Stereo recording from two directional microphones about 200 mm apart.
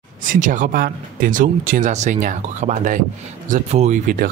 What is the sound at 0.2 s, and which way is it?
Speech, 40° right (ahead or behind).